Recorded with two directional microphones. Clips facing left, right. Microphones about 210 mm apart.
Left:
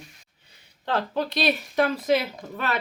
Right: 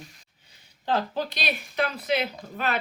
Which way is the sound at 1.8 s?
50° left (ahead or behind).